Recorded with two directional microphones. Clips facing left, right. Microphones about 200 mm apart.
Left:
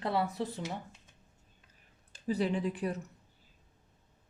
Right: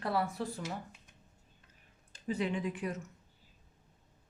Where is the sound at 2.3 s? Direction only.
35° left (ahead or behind).